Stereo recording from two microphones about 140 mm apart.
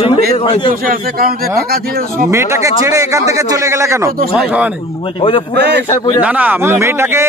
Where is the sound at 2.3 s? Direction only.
20° right (ahead or behind).